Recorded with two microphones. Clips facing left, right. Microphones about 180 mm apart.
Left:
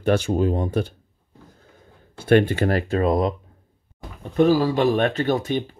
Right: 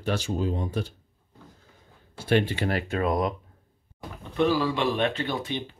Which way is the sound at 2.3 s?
50° left (ahead or behind).